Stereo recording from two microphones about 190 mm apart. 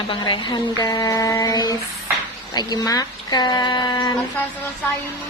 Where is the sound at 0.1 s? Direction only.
25° left (ahead or behind).